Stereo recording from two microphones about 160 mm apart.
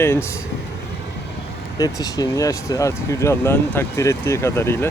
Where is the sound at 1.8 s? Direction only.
20° left (ahead or behind).